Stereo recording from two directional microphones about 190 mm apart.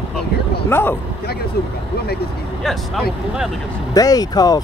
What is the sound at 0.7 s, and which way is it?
Speech, 10° left (ahead or behind).